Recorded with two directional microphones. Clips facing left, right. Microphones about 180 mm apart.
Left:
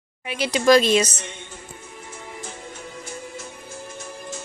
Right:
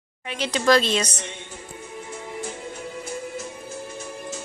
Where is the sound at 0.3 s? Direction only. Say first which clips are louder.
Left 3 dB; 10° left (ahead or behind).